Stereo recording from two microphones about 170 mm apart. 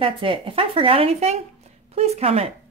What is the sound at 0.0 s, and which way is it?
Speech, 30° right (ahead or behind).